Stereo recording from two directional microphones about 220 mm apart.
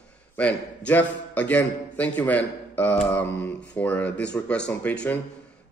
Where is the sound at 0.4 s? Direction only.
5° left (ahead or behind).